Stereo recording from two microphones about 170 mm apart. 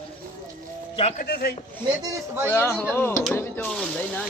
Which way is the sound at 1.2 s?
65° left (ahead or behind).